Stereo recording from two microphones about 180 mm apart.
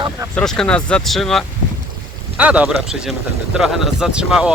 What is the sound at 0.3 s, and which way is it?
Speech, 5° left (ahead or behind).